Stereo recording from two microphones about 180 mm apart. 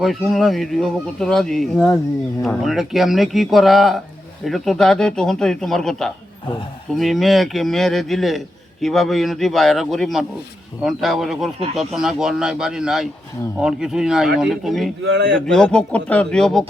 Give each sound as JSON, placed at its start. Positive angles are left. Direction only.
{"t": 0.0, "sound": "speech", "side_deg": 0}
{"t": 15.0, "sound": "speech", "side_deg": -80}
{"t": 15.5, "sound": "speech", "side_deg": 5}